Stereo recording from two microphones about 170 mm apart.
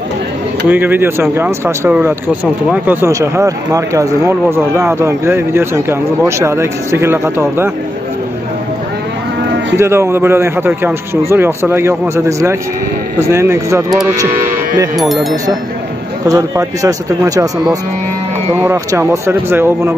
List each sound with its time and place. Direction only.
0.7 s speech: 10° right (ahead or behind)
9.8 s speech: 15° right (ahead or behind)
15.0 s speech: centre (ahead or behind)
16.3 s speech: 20° right (ahead or behind)